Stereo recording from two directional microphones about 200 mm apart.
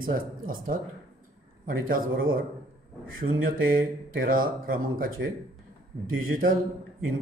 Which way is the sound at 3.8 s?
45° right (ahead or behind).